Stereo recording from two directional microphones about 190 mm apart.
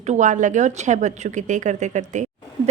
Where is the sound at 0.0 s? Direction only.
40° right (ahead or behind).